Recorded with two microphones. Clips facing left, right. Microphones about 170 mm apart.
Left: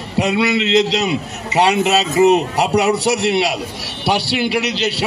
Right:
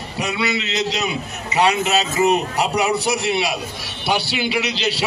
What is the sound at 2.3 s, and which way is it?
A man's voice, 75° left (ahead or behind).